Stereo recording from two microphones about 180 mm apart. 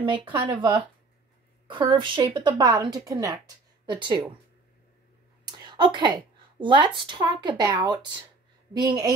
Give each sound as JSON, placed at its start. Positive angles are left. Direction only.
{"t": 0.0, "sound": "speech", "side_deg": -25}
{"t": 5.4, "sound": "a woman's voice", "side_deg": -25}